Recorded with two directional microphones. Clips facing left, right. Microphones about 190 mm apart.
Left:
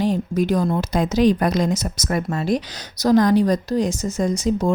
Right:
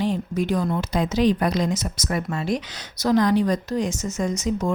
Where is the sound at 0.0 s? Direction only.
40° left (ahead or behind).